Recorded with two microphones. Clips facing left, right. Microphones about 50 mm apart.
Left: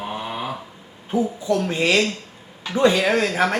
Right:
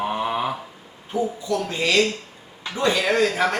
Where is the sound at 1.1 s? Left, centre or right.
Left.